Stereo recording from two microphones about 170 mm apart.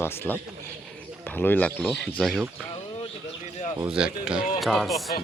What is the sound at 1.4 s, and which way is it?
Speech, 10° left (ahead or behind).